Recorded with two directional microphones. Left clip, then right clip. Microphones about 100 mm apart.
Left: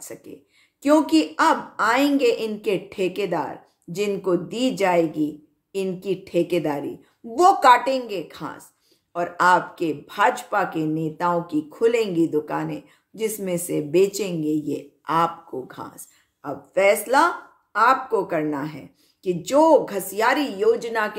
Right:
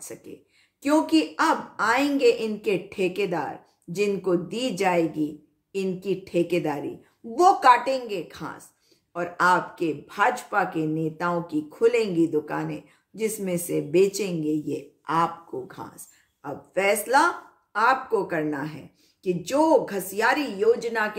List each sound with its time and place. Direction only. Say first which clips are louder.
0.0 s a woman's voice: left 2 dB; 15° left (ahead or behind)